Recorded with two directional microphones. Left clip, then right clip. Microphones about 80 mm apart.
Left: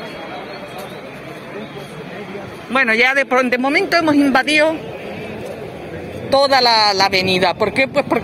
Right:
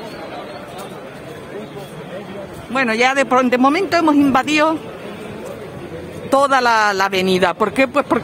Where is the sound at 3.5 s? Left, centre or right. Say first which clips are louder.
Right 1 dB; right.